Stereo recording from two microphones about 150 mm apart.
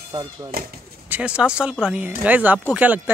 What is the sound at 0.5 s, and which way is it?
Speech, 90° right.